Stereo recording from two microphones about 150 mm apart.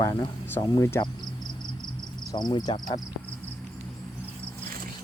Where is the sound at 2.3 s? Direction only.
25° left (ahead or behind).